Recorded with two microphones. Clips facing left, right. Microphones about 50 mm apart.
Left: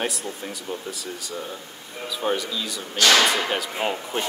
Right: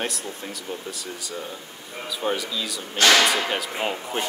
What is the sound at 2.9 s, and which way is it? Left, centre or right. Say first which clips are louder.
Speech: right 1 dB; right.